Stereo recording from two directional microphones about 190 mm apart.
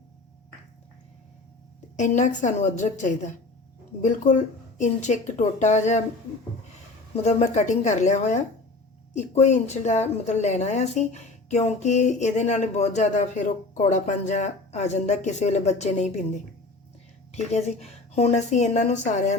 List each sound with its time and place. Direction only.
2.0 s a woman's voice: 40° left (ahead or behind)
7.2 s a woman's voice: 35° left (ahead or behind)
17.5 s a woman's voice: 35° left (ahead or behind)